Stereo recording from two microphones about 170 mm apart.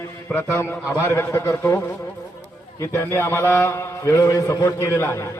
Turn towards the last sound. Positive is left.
turn(degrees=15)  # may be behind; listen again after turning